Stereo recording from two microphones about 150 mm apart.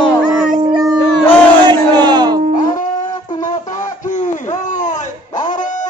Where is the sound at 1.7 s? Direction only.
30° right (ahead or behind).